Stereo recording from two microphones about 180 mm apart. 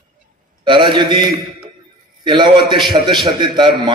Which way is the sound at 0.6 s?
25° right (ahead or behind).